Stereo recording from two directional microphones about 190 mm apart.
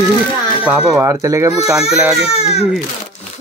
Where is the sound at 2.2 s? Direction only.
35° left (ahead or behind).